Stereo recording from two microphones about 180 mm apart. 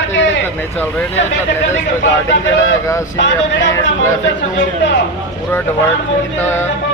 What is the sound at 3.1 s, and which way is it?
Speech, 80° left.